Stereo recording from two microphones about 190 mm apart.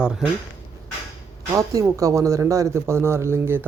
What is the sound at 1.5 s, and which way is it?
A man's voice, 20° right (ahead or behind).